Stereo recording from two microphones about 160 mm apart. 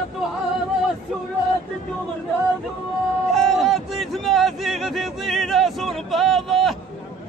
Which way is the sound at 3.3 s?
Centre (ahead or behind).